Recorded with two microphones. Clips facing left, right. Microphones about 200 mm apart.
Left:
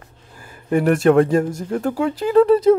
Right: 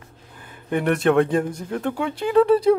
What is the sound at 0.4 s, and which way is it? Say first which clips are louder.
Speech: left 5 dB; centre (ahead or behind).